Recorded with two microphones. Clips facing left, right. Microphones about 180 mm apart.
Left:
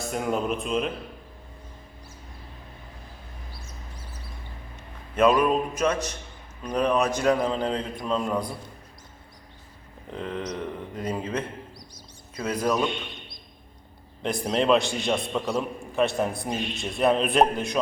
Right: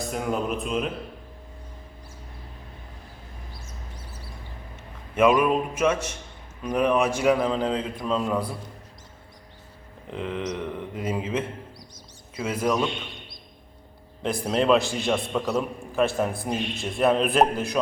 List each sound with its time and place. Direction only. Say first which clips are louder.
0.0 s a man's voice: even; centre (ahead or behind)
5.1 s a man's voice: right 1 dB; 10° right (ahead or behind)
10.2 s a man's voice: right 2 dB; 5° right (ahead or behind)
14.2 s a man's voice: right 1 dB; 5° right (ahead or behind)